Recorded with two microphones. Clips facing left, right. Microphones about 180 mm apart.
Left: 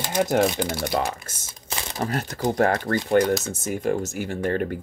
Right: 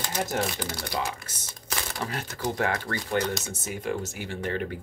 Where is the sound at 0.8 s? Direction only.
45° left (ahead or behind).